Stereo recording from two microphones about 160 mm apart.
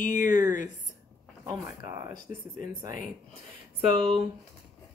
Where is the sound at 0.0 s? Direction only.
55° left (ahead or behind).